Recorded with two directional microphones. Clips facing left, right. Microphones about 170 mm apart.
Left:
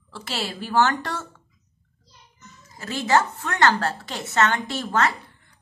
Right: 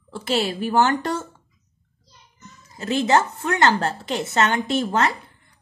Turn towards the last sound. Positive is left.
turn(degrees=-20)  # may be behind; listen again after turning